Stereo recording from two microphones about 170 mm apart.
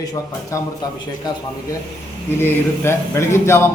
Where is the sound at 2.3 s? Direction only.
15° left (ahead or behind).